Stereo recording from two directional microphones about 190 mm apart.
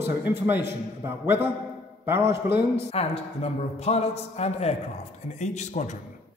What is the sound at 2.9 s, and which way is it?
A man's voice, 30° left (ahead or behind).